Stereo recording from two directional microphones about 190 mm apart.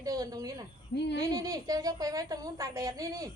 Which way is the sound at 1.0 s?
65° left (ahead or behind).